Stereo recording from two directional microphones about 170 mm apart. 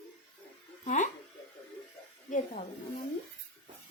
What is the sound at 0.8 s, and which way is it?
Speech, 45° left (ahead or behind).